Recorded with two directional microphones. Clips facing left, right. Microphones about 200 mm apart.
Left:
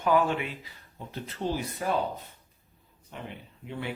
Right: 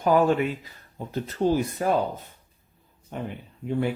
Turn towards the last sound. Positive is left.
turn(degrees=-45)  # may be behind; listen again after turning